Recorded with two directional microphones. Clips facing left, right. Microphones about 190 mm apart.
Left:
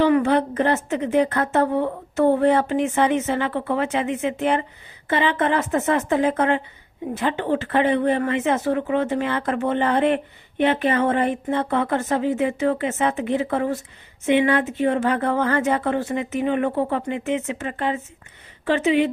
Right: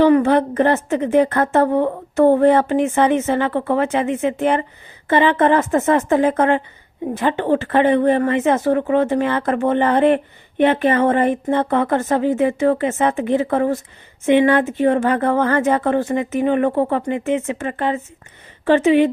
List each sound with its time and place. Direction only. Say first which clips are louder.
0.0 s a woman's voice: right 4 dB; 45° right (ahead or behind)